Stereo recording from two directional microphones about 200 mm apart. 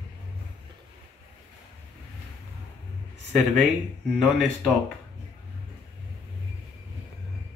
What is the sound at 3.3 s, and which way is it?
Speech, centre (ahead or behind).